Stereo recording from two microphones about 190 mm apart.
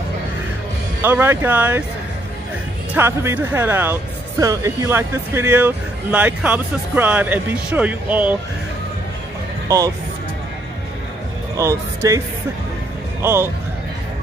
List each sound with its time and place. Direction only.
1.0 s speech: 10° right (ahead or behind)
2.9 s speech: 15° right (ahead or behind)
9.7 s speech: 20° right (ahead or behind)
11.5 s speech: 15° right (ahead or behind)
13.2 s speech: 15° right (ahead or behind)